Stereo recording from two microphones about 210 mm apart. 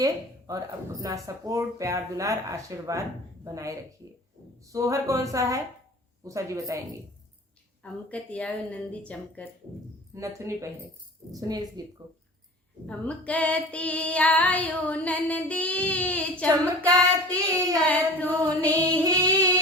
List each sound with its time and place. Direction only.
0.0 s speech: 15° right (ahead or behind)
7.8 s female singing: 5° left (ahead or behind)
10.2 s speech: 15° right (ahead or behind)
12.9 s female singing: 5° left (ahead or behind)
17.3 s speech: 15° right (ahead or behind)
17.8 s female singing: 5° left (ahead or behind)
18.7 s speech: 20° right (ahead or behind)